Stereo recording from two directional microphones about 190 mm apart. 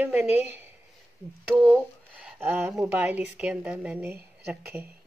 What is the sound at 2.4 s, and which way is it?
Speech, 15° right (ahead or behind).